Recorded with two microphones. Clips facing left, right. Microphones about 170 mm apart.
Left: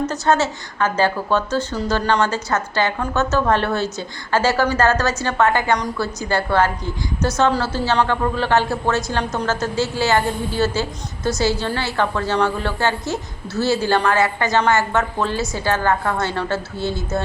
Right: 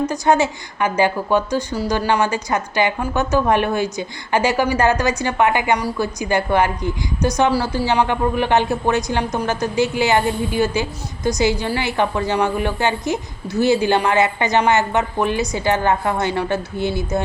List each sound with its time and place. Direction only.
0.0 s a woman's voice: 15° right (ahead or behind)